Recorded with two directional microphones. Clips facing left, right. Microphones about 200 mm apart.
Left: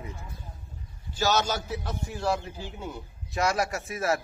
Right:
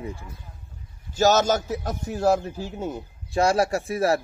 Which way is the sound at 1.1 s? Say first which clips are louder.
Right 7 dB; 45° right (ahead or behind).